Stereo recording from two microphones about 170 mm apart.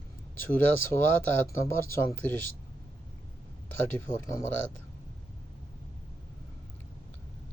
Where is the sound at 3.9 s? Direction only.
15° left (ahead or behind).